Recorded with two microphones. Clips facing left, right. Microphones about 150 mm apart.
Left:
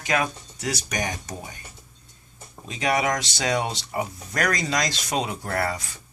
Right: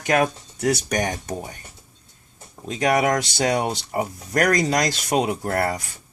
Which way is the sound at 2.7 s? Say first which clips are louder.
Right 4 dB; 50° right (ahead or behind).